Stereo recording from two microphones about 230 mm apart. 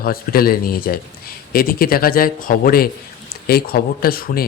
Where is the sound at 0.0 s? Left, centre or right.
Left.